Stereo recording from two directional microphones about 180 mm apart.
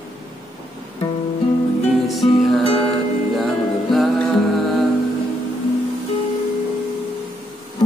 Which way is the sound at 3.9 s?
Centre (ahead or behind).